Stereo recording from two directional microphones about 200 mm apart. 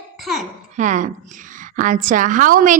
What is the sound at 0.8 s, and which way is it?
A woman's voice, 40° right (ahead or behind).